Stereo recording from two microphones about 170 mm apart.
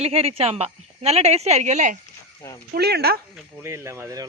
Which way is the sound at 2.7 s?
70° right (ahead or behind).